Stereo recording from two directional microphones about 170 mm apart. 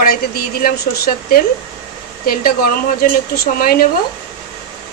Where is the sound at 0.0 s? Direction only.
60° left (ahead or behind).